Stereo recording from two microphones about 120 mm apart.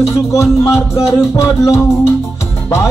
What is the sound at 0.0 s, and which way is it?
Music, 25° left (ahead or behind).